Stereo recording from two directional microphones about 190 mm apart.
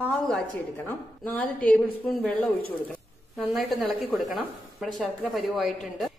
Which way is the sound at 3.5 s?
Centre (ahead or behind).